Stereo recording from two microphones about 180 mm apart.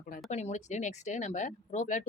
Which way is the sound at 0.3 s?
40° left (ahead or behind).